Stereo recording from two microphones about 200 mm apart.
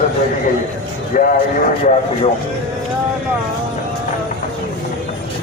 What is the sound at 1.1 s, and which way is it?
Speech, 45° left (ahead or behind).